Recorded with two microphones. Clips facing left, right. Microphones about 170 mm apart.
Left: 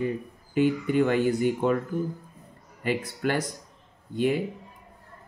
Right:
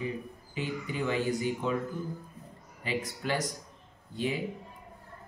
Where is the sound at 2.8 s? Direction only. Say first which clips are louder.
Left 6 dB; 55° left (ahead or behind).